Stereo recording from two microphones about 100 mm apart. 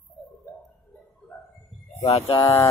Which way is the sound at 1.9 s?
90° left.